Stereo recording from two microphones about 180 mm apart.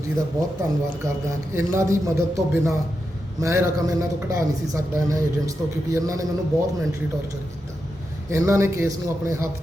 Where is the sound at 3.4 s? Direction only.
15° right (ahead or behind).